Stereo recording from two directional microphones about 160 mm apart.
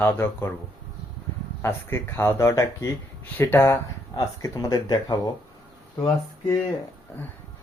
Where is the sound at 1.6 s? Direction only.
15° left (ahead or behind).